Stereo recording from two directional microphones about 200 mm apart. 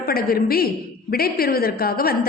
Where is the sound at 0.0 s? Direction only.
50° left (ahead or behind).